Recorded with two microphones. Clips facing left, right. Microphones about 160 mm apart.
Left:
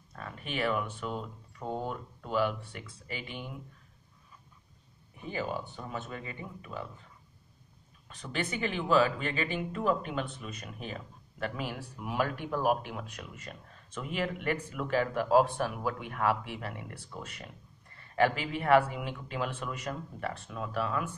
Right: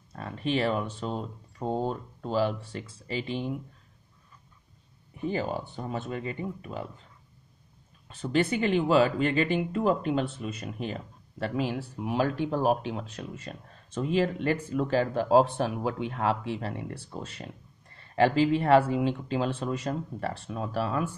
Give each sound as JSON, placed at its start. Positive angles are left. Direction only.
{"t": 0.1, "sound": "speech", "side_deg": -30}
{"t": 5.3, "sound": "speech", "side_deg": -30}
{"t": 8.8, "sound": "speech", "side_deg": -35}